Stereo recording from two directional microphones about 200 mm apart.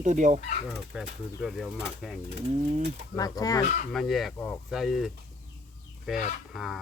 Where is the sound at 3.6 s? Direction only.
35° left (ahead or behind).